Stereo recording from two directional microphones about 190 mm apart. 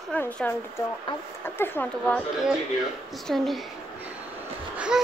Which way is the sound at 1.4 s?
10° left (ahead or behind).